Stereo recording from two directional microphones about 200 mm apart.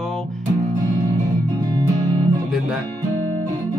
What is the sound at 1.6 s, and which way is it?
Music, 20° right (ahead or behind).